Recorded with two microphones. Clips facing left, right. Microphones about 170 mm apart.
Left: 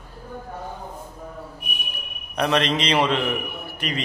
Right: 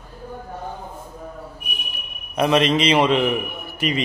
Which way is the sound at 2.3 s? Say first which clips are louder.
Right 4 dB; 5° right (ahead or behind).